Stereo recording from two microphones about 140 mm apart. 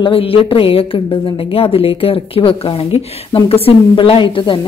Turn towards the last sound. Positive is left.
turn(degrees=35)  # may be behind; listen again after turning